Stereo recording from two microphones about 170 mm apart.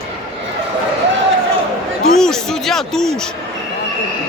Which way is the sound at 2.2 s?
5° left (ahead or behind).